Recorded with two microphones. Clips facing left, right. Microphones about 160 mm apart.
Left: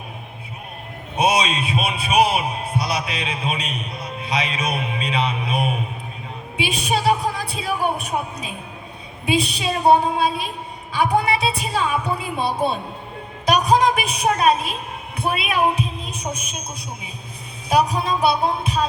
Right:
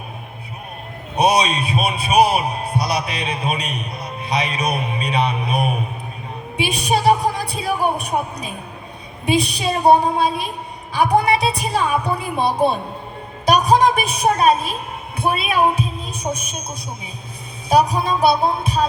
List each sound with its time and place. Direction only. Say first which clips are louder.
1.1 s a man's voice: right 3 dB; 35° right (ahead or behind)
17.7 s a man's voice: right 3 dB; 35° right (ahead or behind)